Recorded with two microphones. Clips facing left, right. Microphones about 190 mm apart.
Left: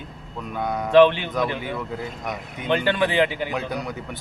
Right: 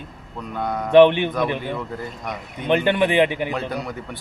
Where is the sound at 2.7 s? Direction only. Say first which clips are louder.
Right 3 dB; 20° right (ahead or behind).